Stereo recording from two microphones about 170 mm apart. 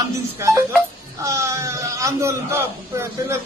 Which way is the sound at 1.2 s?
15° right (ahead or behind).